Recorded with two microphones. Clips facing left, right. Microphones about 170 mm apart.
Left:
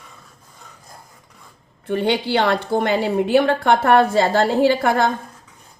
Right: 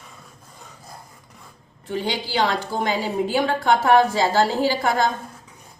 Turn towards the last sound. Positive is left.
turn(degrees=60)  # may be behind; listen again after turning